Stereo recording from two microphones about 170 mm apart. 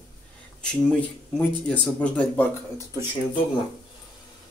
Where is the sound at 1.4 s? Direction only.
5° left (ahead or behind).